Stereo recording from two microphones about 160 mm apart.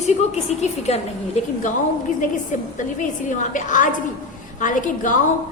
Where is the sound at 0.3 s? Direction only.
45° left (ahead or behind).